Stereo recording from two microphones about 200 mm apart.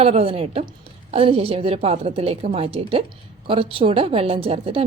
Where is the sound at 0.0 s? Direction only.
30° right (ahead or behind).